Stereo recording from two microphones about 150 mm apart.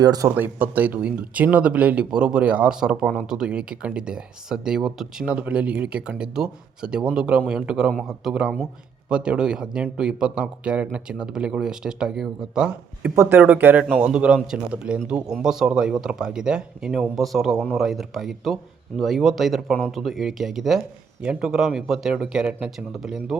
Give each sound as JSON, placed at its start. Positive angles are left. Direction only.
{"t": 0.0, "sound": "speech", "side_deg": -25}
{"t": 0.3, "sound": "a man's voice", "side_deg": -10}